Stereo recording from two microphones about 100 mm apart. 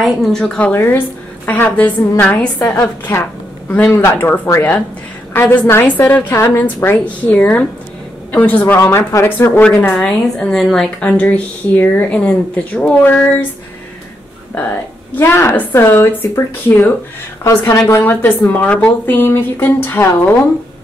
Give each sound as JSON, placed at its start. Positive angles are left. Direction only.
{"t": 0.0, "sound": "a woman's voice", "side_deg": 5}
{"t": 0.6, "sound": "a woman's voice", "side_deg": 20}
{"t": 9.6, "sound": "a woman's voice", "side_deg": 15}
{"t": 15.1, "sound": "a woman's voice", "side_deg": 25}